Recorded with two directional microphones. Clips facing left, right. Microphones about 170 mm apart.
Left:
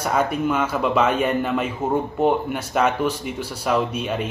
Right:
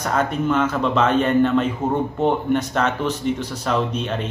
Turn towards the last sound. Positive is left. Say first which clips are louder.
# even
turn(degrees=10)  # may be behind; listen again after turning